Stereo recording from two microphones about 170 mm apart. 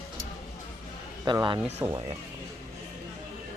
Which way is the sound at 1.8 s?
15° right (ahead or behind).